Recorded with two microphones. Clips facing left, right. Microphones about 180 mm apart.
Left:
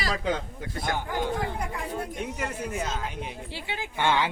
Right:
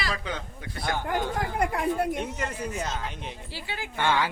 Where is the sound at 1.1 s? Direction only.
70° right (ahead or behind).